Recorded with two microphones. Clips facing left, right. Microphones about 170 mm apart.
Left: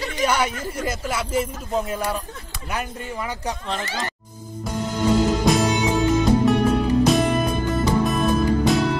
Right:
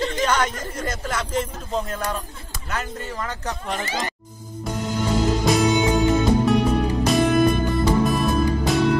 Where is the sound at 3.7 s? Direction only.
15° right (ahead or behind).